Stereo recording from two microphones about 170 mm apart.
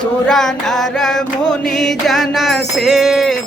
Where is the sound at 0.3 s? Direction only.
Centre (ahead or behind).